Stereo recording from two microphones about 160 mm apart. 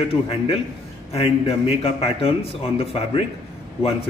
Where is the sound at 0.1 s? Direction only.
35° left (ahead or behind).